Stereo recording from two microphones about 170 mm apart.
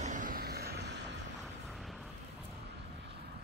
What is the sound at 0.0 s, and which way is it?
Vehicle, 50° right (ahead or behind).